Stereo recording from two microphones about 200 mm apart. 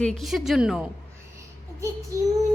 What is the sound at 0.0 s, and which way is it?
Speech, centre (ahead or behind).